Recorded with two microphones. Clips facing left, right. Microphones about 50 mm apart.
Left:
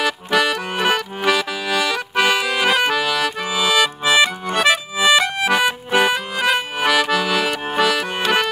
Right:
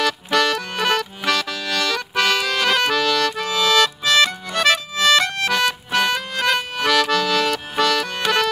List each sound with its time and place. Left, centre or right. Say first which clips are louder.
0.0 s accordion: left 1 dB; centre
6.1 s accordion: left 1 dB; centre